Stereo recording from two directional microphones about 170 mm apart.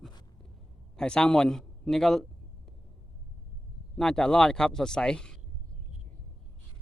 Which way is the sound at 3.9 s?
5° left (ahead or behind).